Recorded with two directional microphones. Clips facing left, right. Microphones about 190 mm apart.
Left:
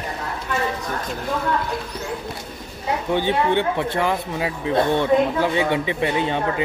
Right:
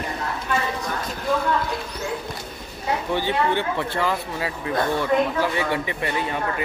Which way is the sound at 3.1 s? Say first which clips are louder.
Left 4 dB; 20° left (ahead or behind).